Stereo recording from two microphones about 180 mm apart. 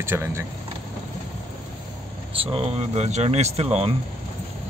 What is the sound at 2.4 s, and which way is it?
Speech, 35° right (ahead or behind).